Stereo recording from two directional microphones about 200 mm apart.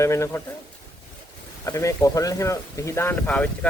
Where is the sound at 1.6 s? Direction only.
15° left (ahead or behind).